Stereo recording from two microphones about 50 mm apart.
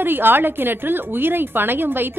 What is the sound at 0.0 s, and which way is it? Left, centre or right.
A woman's voice, right.